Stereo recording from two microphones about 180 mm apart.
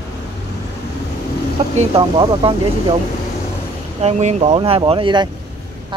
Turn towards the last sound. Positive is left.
turn(degrees=-25)  # may be behind; listen again after turning